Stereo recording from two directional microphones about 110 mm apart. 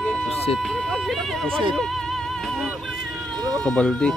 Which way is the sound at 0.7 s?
Centre (ahead or behind).